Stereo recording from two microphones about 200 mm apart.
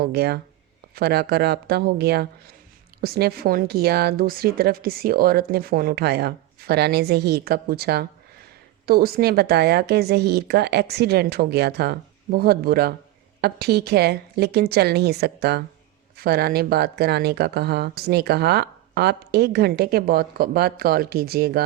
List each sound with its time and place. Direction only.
0.0 s a woman's voice: 50° right (ahead or behind)